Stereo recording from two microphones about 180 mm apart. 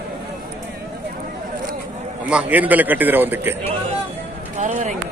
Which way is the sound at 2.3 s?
10° right (ahead or behind).